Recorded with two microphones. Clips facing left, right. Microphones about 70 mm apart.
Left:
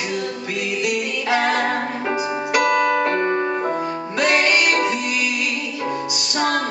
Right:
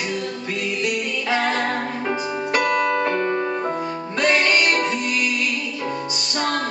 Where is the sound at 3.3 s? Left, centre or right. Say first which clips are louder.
Left 2 dB; centre.